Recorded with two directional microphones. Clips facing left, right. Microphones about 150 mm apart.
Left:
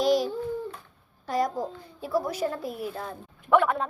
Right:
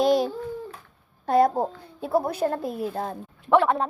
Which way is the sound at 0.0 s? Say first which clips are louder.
Right 3 dB; 55° right (ahead or behind).